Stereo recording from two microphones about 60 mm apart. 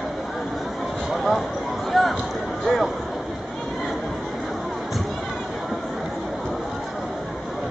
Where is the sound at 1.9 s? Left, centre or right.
Centre.